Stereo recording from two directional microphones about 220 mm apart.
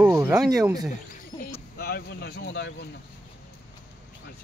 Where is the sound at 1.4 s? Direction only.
45° left (ahead or behind).